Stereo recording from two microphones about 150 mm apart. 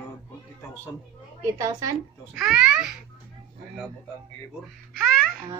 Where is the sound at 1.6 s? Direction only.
25° right (ahead or behind).